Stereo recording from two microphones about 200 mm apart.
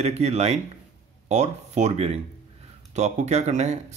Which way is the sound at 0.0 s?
30° right (ahead or behind).